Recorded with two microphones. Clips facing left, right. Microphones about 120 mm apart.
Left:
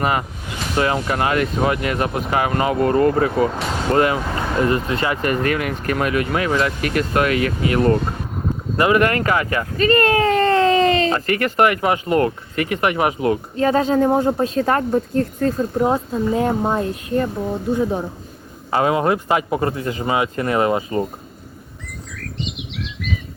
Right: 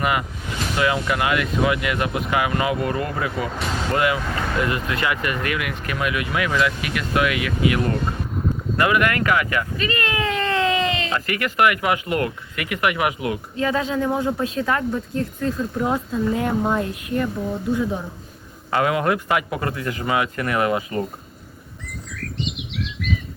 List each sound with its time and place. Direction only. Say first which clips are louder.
0.0 s speech: left 2 dB; 35° left (ahead or behind)
15.8 s speech: left 3 dB; 30° left (ahead or behind)
21.8 s chirp: right 1 dB; centre (ahead or behind)